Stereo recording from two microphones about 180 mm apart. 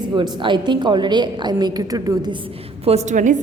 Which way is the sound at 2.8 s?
40° right (ahead or behind).